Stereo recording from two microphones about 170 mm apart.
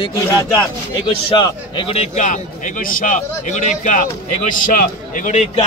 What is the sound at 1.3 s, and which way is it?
A man's voice, 30° left (ahead or behind).